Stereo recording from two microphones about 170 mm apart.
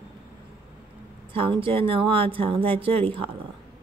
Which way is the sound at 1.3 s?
30° right (ahead or behind).